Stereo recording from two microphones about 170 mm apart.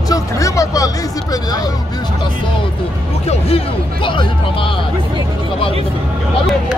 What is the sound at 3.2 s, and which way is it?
Speech, 35° left (ahead or behind).